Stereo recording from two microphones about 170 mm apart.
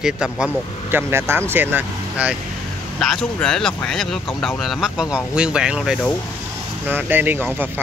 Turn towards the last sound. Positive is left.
turn(degrees=-10)  # may be behind; listen again after turning